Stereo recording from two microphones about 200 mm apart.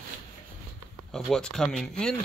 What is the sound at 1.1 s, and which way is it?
Speech, centre (ahead or behind).